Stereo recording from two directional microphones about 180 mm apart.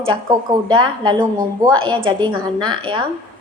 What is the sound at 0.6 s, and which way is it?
Speech, 25° right (ahead or behind).